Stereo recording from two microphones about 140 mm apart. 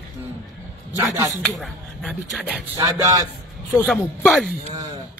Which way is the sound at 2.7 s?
25° right (ahead or behind).